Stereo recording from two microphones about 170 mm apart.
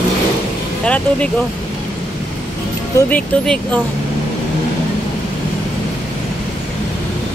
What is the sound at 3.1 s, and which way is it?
Speech, 10° left (ahead or behind).